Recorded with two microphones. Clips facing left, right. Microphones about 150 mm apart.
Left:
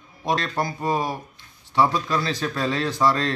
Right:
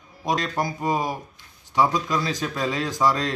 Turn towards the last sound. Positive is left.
turn(degrees=-15)  # may be behind; listen again after turning